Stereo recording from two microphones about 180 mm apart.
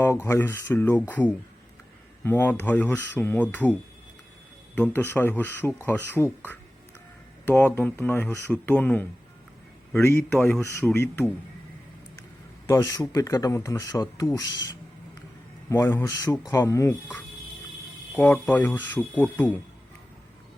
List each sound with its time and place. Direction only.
0.0 s speech: 15° left (ahead or behind)
2.2 s speech: 10° left (ahead or behind)
4.8 s speech: 10° left (ahead or behind)
7.4 s speech: 10° left (ahead or behind)
12.6 s speech: 20° left (ahead or behind)
15.7 s speech: 15° left (ahead or behind)
18.4 s speech: 10° left (ahead or behind)